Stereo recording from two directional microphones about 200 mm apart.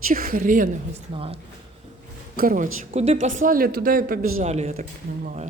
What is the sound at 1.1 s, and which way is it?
Speech, 30° right (ahead or behind).